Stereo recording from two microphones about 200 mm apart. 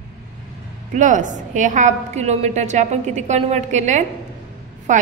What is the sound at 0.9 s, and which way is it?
A woman's voice, 40° right (ahead or behind).